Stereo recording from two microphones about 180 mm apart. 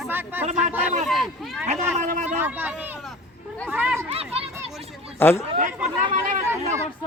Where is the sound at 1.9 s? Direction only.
45° right (ahead or behind).